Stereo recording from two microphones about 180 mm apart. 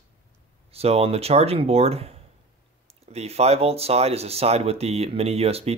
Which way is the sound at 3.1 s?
35° right (ahead or behind).